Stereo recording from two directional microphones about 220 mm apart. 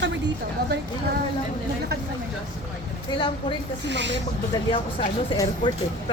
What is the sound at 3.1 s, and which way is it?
Speech, 20° left (ahead or behind).